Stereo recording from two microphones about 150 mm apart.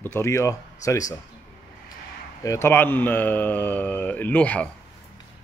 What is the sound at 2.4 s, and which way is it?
A man's voice, 20° left (ahead or behind).